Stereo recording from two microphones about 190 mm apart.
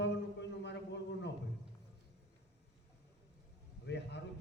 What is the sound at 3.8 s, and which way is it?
Speech, 65° left (ahead or behind).